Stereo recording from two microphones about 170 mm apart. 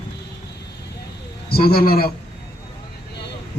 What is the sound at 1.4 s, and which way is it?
Speech, 65° left (ahead or behind).